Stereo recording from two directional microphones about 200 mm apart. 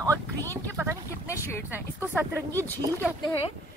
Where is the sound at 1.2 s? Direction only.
15° left (ahead or behind).